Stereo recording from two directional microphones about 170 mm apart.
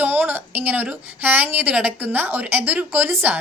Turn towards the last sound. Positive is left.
turn(degrees=-10)  # may be behind; listen again after turning